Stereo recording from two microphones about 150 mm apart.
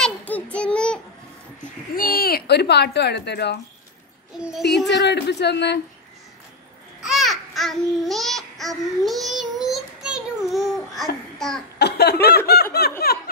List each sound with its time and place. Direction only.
0.0 s child singing: 10° left (ahead or behind)
2.0 s speech: 80° left
4.4 s a child's voice: 5° right (ahead or behind)
5.1 s a man's voice: 90° left
7.0 s babbling: centre (ahead or behind)
9.6 s child singing: 5° right (ahead or behind)
11.3 s a child's voice: 5° left (ahead or behind)
11.8 s snicker: 90° left
13.0 s a sound: 90° left